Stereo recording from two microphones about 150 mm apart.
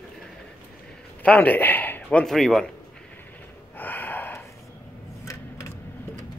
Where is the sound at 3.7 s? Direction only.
10° left (ahead or behind).